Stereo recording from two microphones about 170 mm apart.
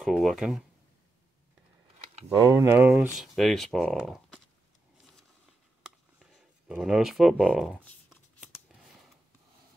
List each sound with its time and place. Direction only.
0.0 s speech: centre (ahead or behind)
2.4 s speech: 20° right (ahead or behind)
3.2 s speech: centre (ahead or behind)
6.7 s speech: 5° right (ahead or behind)
7.7 s a sound: 10° left (ahead or behind)